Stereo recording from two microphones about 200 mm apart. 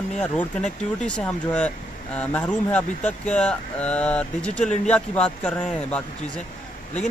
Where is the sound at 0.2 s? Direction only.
5° left (ahead or behind).